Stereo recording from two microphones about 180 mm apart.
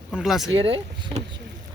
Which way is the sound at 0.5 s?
30° right (ahead or behind).